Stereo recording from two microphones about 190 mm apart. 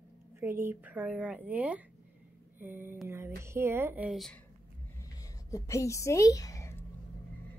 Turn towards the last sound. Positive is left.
turn(degrees=15)  # may be behind; listen again after turning